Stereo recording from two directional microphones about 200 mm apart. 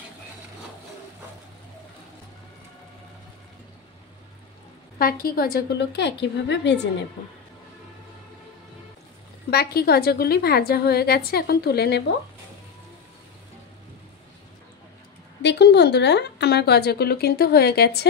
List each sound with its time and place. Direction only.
4.9 s speech: 50° left (ahead or behind)
9.5 s a woman's voice: 50° left (ahead or behind)
15.4 s speech: 55° left (ahead or behind)